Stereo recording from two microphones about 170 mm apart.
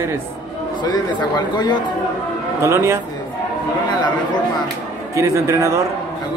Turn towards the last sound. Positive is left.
turn(degrees=-15)  # may be behind; listen again after turning